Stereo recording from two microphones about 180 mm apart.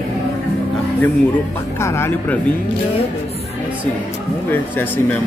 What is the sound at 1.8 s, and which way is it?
Speech, 15° left (ahead or behind).